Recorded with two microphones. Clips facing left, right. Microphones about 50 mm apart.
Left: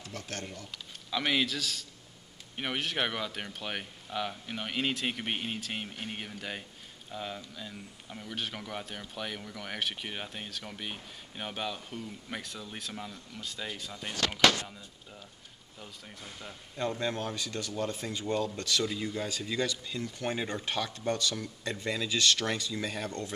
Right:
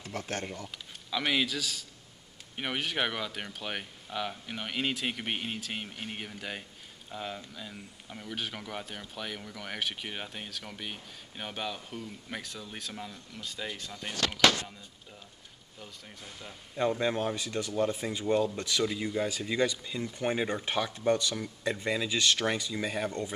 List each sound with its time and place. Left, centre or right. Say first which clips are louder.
0.0 s speech: right 4 dB; right
1.1 s speech: even; centre
16.7 s speech: right 4 dB; centre